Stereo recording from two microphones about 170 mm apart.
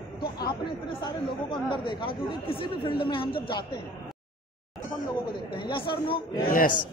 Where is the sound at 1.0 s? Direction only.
30° left (ahead or behind).